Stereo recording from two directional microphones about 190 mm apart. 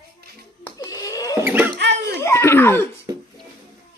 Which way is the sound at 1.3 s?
10° right (ahead or behind).